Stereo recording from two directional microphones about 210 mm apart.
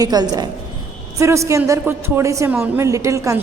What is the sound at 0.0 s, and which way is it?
A woman's voice, 20° right (ahead or behind).